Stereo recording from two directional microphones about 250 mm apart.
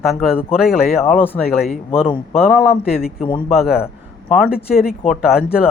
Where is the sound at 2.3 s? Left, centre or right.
Centre.